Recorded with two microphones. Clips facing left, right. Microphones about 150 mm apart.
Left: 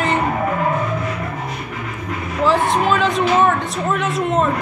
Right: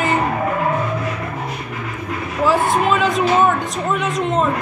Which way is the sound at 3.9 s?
5° left (ahead or behind).